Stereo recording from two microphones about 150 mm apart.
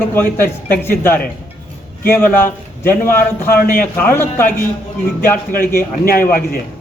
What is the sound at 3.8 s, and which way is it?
Speech, 15° left (ahead or behind).